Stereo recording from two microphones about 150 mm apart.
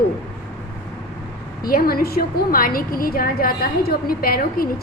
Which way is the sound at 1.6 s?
75° left (ahead or behind).